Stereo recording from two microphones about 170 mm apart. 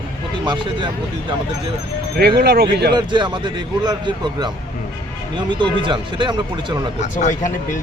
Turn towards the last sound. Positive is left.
turn(degrees=45)  # may be behind; listen again after turning